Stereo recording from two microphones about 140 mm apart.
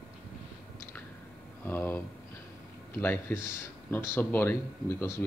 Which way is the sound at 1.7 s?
15° left (ahead or behind).